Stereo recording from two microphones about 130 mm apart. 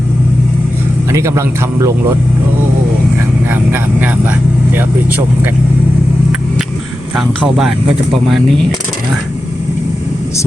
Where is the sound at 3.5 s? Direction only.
15° right (ahead or behind).